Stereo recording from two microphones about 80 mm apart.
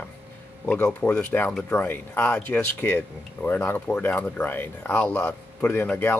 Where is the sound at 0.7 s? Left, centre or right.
Centre.